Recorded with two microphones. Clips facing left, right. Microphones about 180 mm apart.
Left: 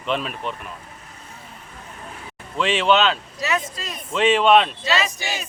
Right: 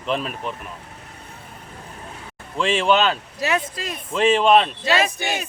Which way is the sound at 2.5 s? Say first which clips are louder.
Even; centre (ahead or behind).